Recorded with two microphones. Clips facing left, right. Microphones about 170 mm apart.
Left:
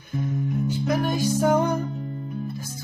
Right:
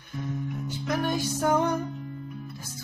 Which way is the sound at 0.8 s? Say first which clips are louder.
Left 3 dB; 5° left (ahead or behind).